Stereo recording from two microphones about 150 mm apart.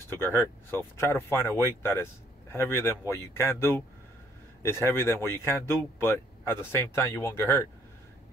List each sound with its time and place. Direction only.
0.1 s speech: 15° left (ahead or behind)